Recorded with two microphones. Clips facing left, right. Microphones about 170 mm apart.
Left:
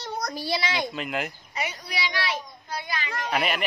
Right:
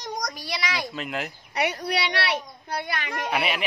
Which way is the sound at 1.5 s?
65° right (ahead or behind).